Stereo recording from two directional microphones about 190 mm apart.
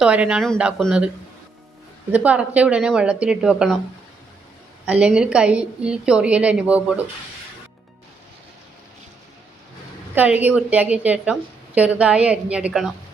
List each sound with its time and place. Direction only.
0.0 s speech: 5° right (ahead or behind)
2.1 s speech: 5° right (ahead or behind)
4.9 s a woman's voice: 5° right (ahead or behind)
10.2 s a woman's voice: 10° right (ahead or behind)